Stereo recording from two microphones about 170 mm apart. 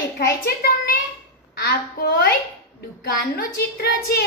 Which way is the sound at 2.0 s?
65° left (ahead or behind).